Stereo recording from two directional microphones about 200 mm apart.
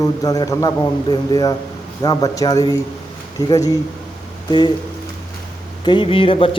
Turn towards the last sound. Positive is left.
turn(degrees=25)  # may be behind; listen again after turning